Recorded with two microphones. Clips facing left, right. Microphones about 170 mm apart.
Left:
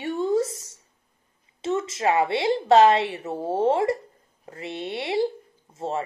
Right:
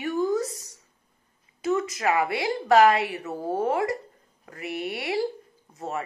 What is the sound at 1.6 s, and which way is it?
Speech, 25° left (ahead or behind).